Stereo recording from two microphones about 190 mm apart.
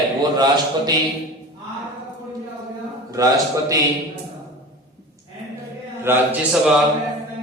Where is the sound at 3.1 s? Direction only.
20° right (ahead or behind).